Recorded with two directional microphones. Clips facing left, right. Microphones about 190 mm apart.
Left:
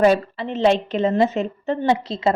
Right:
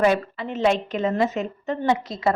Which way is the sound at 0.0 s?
30° left (ahead or behind).